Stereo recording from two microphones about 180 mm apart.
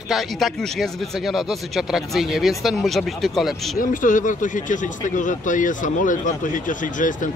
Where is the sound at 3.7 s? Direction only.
45° left (ahead or behind).